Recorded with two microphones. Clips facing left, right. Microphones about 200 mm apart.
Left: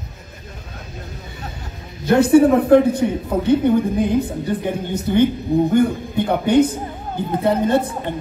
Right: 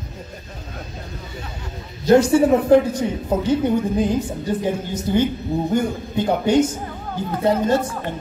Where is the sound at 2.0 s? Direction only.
60° left (ahead or behind).